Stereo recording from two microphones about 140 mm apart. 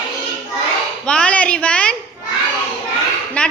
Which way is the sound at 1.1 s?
10° left (ahead or behind).